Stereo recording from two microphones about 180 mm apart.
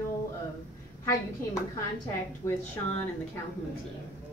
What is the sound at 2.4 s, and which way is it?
Speech, 15° left (ahead or behind).